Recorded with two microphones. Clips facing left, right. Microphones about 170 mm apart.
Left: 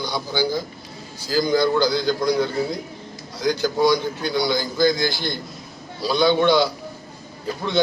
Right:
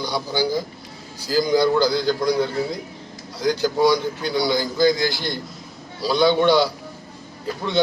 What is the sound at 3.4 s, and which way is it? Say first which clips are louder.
A man's voice: right 1 dB; 10° right (ahead or behind).